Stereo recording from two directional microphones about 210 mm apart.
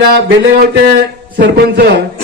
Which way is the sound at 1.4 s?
50° right (ahead or behind).